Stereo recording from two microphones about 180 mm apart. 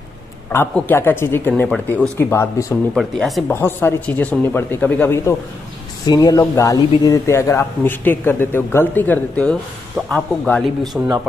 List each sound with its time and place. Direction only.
0.5 s a man's voice: 10° left (ahead or behind)
3.5 s a man's voice: 10° left (ahead or behind)